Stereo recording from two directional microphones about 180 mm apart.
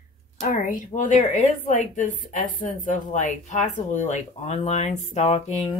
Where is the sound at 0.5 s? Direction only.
45° left (ahead or behind).